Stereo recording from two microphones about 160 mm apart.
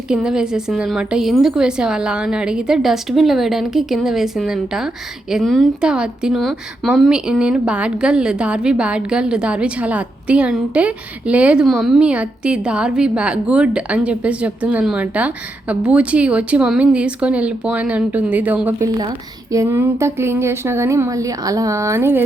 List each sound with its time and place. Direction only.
0.1 s a woman's voice: 5° right (ahead or behind)
18.9 s a woman's voice: 20° right (ahead or behind)